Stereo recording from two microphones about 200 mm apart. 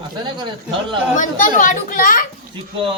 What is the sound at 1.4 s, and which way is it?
Speech, 40° left (ahead or behind).